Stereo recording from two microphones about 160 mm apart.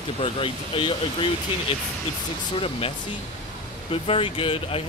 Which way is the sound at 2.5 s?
35° left (ahead or behind).